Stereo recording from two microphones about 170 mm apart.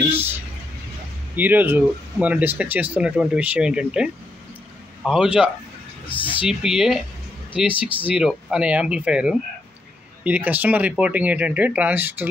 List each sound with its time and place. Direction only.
1.3 s speech: 10° right (ahead or behind)
6.0 s speech: 10° left (ahead or behind)
6.4 s speech: 5° right (ahead or behind)
7.7 s speech: 30° left (ahead or behind)
8.1 s speech: 5° right (ahead or behind)